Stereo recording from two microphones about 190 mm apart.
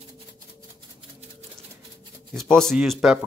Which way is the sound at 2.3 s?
5° left (ahead or behind).